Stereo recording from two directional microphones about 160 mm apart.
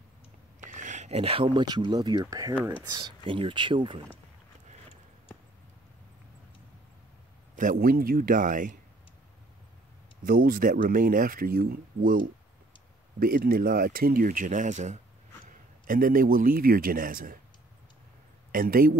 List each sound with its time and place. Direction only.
0.7 s speech: 50° right (ahead or behind); by 4.0 s 30° right (ahead or behind)
7.5 s speech: 55° right (ahead or behind)
10.2 s speech: 65° right (ahead or behind)
13.2 s speech: 65° right (ahead or behind); by 15.0 s 45° right (ahead or behind)
15.9 s speech: 60° right (ahead or behind)
18.5 s speech: 65° right (ahead or behind)